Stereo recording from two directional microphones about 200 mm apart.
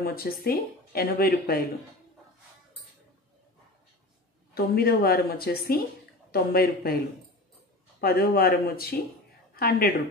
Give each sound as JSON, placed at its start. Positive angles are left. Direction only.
{"t": 0.0, "sound": "speech", "side_deg": 50}
{"t": 4.6, "sound": "speech", "side_deg": 50}
{"t": 8.0, "sound": "a woman's voice", "side_deg": 50}